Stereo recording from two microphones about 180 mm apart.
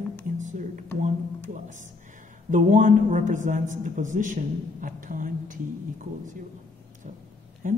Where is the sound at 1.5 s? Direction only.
45° right (ahead or behind).